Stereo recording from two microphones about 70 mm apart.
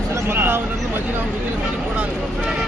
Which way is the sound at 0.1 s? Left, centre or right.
Right.